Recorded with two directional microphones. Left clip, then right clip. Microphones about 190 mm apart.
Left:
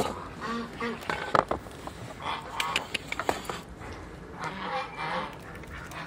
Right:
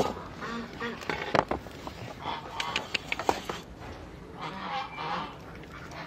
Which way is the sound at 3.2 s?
30° right (ahead or behind).